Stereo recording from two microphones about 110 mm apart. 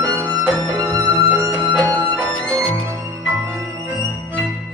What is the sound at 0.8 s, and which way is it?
Violin, 35° right (ahead or behind).